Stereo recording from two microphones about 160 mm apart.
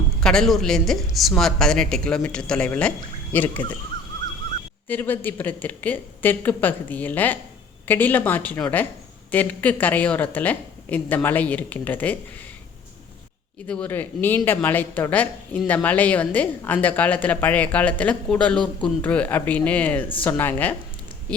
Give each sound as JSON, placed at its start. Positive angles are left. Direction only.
{"t": 0.2, "sound": "speech", "side_deg": 5}
{"t": 4.9, "sound": "speech", "side_deg": 10}
{"t": 13.7, "sound": "speech", "side_deg": 10}